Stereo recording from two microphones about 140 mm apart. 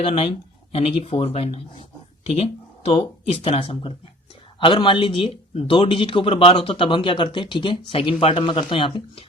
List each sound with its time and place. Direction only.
0.0 s a man's voice: 45° left (ahead or behind)